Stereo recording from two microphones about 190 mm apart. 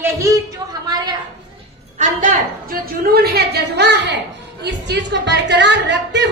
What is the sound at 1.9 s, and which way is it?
A woman's voice, 40° right (ahead or behind).